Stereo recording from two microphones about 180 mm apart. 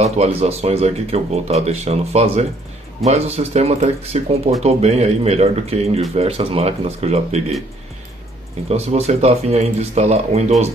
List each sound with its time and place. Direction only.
0.0 s speech: 35° right (ahead or behind)
8.6 s speech: 35° right (ahead or behind)